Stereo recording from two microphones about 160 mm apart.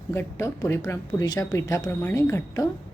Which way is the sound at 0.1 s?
15° left (ahead or behind).